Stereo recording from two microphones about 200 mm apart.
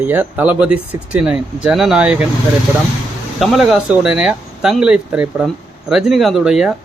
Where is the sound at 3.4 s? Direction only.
Centre (ahead or behind).